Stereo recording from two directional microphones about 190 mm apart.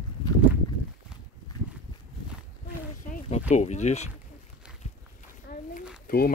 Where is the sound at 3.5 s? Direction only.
35° left (ahead or behind).